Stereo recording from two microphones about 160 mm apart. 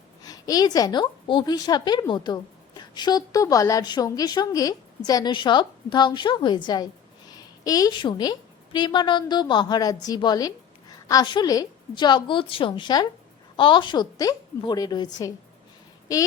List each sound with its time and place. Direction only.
0.2 s a woman's voice: 25° left (ahead or behind)